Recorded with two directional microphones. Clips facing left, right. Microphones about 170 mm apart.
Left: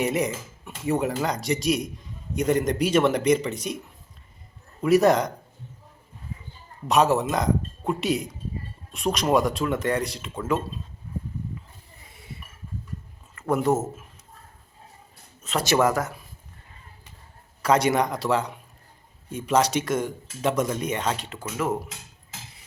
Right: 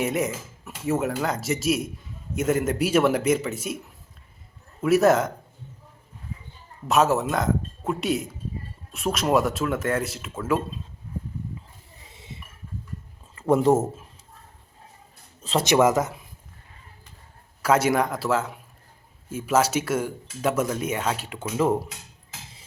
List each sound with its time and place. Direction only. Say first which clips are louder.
0.0 s speech: even; centre (ahead or behind)
4.8 s speech: even; centre (ahead or behind)
6.8 s speech: even; centre (ahead or behind)
12.0 s a sound: even; 25° right (ahead or behind)
13.3 s speech: right 4 dB; 25° right (ahead or behind)
15.4 s speech: right 3 dB; 30° right (ahead or behind)
15.6 s speech: right 2 dB; 20° right (ahead or behind)
17.6 s speech: even; 5° right (ahead or behind)
21.6 s speech: right 4 dB; 25° right (ahead or behind)